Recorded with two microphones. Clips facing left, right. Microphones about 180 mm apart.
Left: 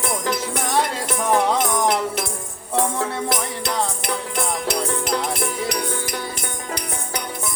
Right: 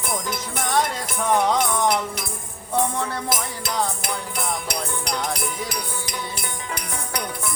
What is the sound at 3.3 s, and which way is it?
Music, centre (ahead or behind).